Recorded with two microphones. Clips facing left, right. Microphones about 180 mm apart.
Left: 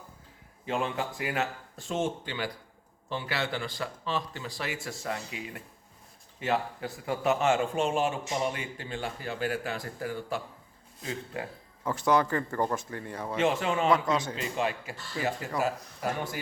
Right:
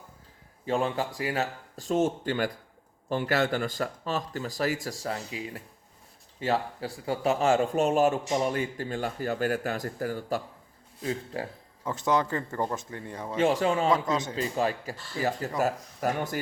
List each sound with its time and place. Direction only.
0.6 s speech: 35° right (ahead or behind)
11.9 s speech: 20° right (ahead or behind)
13.3 s speech: 35° right (ahead or behind)